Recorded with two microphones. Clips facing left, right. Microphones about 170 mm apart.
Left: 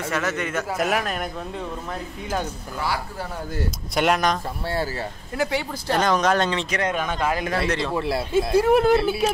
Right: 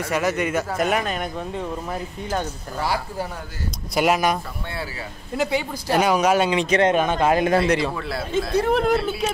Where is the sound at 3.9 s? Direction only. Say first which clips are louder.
Right 2 dB; 5° right (ahead or behind).